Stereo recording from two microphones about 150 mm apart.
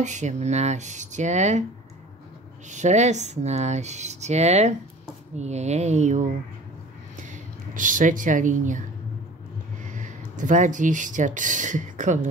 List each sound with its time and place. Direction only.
0.0 s speech: 50° right (ahead or behind)
2.7 s speech: 50° right (ahead or behind)
7.7 s speech: 60° right (ahead or behind)
9.8 s speech: 55° right (ahead or behind)